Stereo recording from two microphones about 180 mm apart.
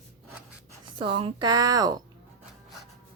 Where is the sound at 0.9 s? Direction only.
30° right (ahead or behind).